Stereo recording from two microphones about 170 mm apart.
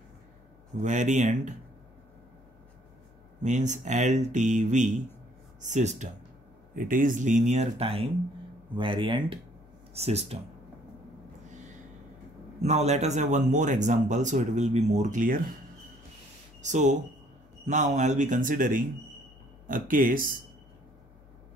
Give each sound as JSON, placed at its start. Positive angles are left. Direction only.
{"t": 0.8, "sound": "speech", "side_deg": -45}
{"t": 3.4, "sound": "speech", "side_deg": -45}
{"t": 12.6, "sound": "speech", "side_deg": -40}
{"t": 16.6, "sound": "speech", "side_deg": -45}